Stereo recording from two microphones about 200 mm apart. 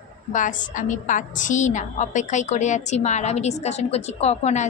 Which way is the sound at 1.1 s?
40° left (ahead or behind).